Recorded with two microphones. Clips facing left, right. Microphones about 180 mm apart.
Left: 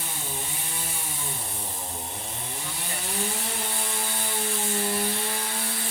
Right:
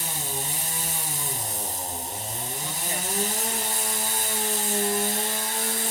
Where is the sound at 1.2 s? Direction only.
40° right (ahead or behind).